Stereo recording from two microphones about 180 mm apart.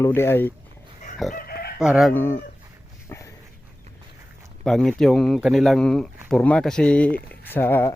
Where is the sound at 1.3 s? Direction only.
55° left (ahead or behind).